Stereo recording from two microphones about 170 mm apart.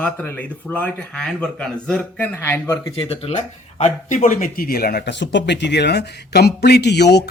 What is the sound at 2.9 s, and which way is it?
Speech, 35° left (ahead or behind).